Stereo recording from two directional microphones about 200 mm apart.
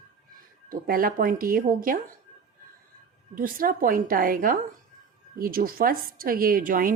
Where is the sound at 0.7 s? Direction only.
45° right (ahead or behind).